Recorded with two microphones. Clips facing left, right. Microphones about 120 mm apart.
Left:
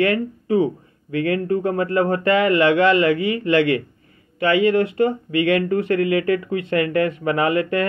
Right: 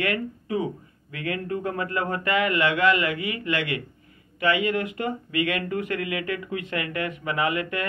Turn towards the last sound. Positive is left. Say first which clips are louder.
# left 7 dB
turn(degrees=35)  # may be behind; listen again after turning